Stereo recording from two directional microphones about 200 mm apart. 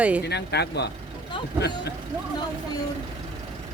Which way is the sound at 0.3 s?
55° left (ahead or behind).